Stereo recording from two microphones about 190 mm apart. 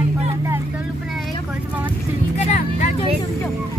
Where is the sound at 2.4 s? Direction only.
35° left (ahead or behind).